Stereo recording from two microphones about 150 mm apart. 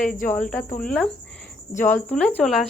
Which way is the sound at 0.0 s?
60° left (ahead or behind).